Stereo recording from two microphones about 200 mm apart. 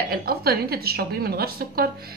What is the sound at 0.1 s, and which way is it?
A woman's voice, 50° right (ahead or behind).